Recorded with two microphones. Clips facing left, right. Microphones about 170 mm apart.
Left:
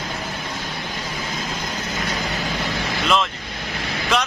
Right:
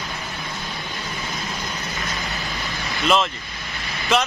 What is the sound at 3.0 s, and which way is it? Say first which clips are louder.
Speech: right 2 dB; centre (ahead or behind).